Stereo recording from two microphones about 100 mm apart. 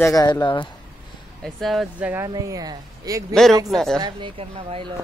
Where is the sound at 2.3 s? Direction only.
35° right (ahead or behind).